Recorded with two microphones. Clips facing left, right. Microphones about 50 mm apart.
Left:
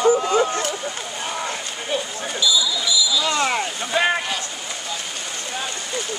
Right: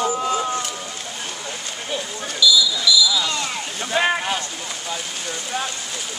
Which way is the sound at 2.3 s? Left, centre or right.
Left.